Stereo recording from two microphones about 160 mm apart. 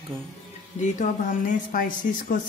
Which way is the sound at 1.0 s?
55° left (ahead or behind).